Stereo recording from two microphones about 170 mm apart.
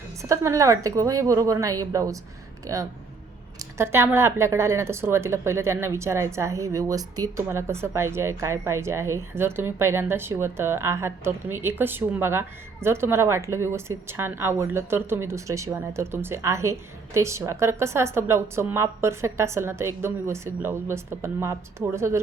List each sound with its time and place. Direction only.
0.2 s a woman's voice: 15° right (ahead or behind)